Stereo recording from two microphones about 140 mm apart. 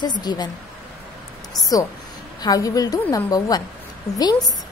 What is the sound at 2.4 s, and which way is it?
A woman's voice, 25° left (ahead or behind).